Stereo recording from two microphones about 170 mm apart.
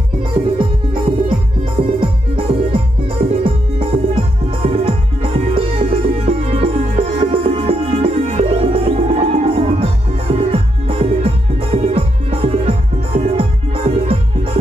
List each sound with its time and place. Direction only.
1.8 s music: 35° right (ahead or behind)